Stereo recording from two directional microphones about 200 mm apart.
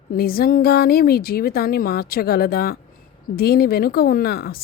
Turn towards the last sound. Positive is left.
turn(degrees=50)  # may be behind; listen again after turning